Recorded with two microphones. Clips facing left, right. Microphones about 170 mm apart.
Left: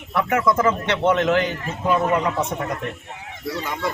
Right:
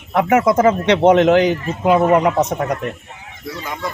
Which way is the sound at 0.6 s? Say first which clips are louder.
Right 7 dB; 75° right (ahead or behind).